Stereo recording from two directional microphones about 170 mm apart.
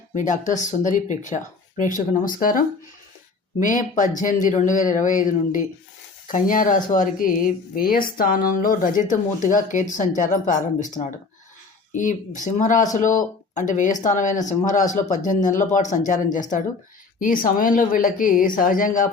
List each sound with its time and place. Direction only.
0.1 s speech: 50° left (ahead or behind)